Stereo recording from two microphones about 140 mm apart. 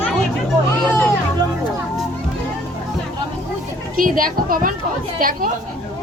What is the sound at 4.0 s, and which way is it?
A child's voice, 85° right.